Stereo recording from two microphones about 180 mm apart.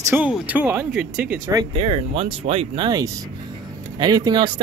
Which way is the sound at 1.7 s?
30° right (ahead or behind).